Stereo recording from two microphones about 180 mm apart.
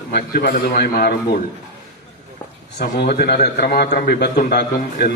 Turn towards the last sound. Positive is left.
turn(degrees=65)  # may be behind; listen again after turning